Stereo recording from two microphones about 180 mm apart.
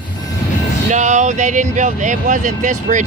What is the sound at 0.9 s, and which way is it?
Speech, 40° right (ahead or behind).